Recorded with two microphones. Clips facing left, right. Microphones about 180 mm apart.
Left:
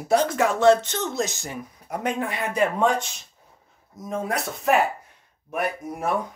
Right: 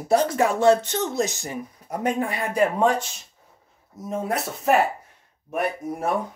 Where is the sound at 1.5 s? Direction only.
35° right (ahead or behind).